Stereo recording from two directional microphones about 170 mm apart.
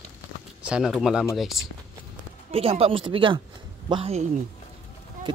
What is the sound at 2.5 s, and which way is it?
Speech, 35° right (ahead or behind).